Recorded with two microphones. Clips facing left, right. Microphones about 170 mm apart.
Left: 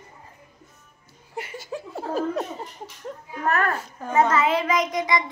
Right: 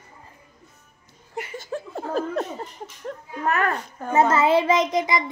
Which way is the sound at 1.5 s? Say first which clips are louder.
Right 2 dB; 10° left (ahead or behind).